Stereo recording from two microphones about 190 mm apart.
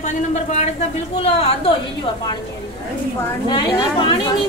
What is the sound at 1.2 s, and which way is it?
Speech, 35° left (ahead or behind).